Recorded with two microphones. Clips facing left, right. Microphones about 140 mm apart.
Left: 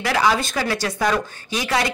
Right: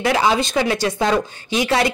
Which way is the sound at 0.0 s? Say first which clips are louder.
Right 2 dB; 25° right (ahead or behind).